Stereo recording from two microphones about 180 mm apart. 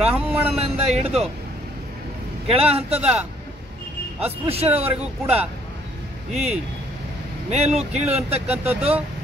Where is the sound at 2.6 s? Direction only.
35° right (ahead or behind).